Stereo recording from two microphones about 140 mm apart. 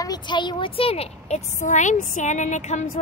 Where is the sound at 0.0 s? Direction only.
30° left (ahead or behind).